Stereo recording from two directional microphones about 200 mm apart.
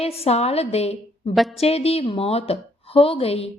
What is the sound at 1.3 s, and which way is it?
Speech, centre (ahead or behind).